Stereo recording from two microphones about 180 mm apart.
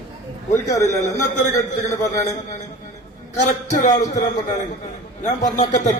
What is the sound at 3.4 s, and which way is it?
A man's voice, 40° left (ahead or behind).